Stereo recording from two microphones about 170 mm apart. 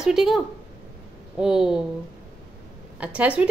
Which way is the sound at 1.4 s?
5° right (ahead or behind).